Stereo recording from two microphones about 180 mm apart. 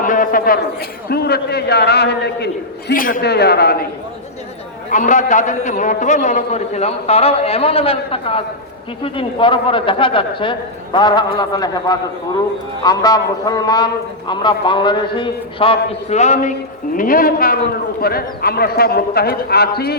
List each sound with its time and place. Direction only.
0.0 s a sound: 50° left (ahead or behind)
1.1 s a man's voice: 60° left (ahead or behind)
4.9 s a man's voice: 45° left (ahead or behind); by 20.0 s 60° left (ahead or behind)